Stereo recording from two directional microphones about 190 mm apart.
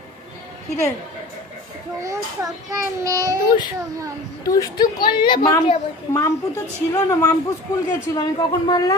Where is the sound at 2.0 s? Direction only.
15° right (ahead or behind).